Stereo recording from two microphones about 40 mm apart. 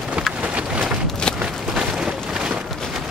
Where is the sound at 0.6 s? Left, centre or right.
Right.